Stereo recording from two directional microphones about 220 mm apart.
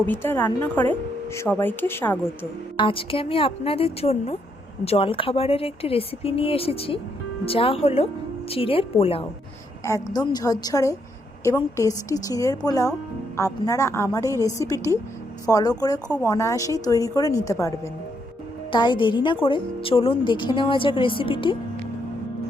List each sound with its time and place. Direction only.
0.0 s a woman's voice: 10° left (ahead or behind)
2.7 s a woman's voice: 25° left (ahead or behind)
9.8 s a woman's voice: 15° left (ahead or behind)